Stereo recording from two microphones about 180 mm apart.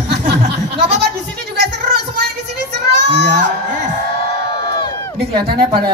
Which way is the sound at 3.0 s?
75° right (ahead or behind).